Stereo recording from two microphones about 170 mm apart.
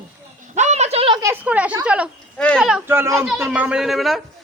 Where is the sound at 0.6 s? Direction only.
40° right (ahead or behind).